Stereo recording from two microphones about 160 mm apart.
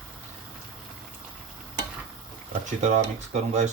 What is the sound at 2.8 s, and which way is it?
Speech, 45° right (ahead or behind).